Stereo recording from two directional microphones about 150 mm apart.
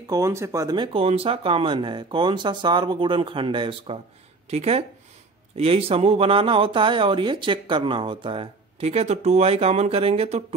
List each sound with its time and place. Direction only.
0.1 s speech: 20° right (ahead or behind)
0.9 s speech: 40° right (ahead or behind)